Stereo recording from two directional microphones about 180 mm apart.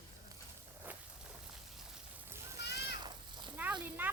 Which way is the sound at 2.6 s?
65° left (ahead or behind).